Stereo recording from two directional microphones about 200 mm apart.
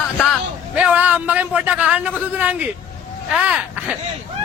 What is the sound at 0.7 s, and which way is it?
A man's voice, 5° right (ahead or behind).